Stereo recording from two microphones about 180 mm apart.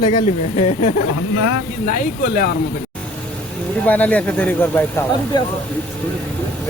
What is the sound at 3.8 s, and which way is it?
Speech, 10° left (ahead or behind).